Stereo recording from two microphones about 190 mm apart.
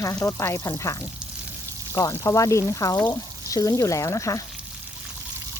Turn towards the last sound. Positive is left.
turn(degrees=15)  # may be behind; listen again after turning